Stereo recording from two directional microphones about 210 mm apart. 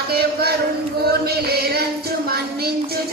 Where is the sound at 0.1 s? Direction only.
45° right (ahead or behind).